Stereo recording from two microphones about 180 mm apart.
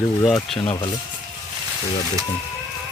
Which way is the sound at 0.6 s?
30° left (ahead or behind).